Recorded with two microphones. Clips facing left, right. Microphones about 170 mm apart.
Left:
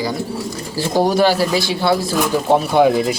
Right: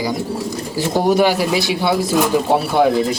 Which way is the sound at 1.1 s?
20° right (ahead or behind).